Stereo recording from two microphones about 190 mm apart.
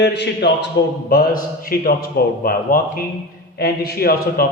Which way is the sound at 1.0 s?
50° left (ahead or behind).